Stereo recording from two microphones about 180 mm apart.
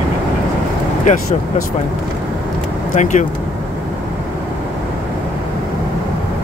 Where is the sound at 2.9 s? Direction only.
45° left (ahead or behind).